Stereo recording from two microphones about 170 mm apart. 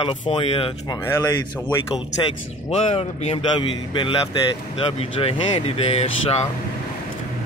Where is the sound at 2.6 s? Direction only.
40° left (ahead or behind).